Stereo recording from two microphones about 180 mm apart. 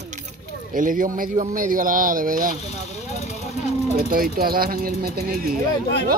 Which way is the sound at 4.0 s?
55° right (ahead or behind).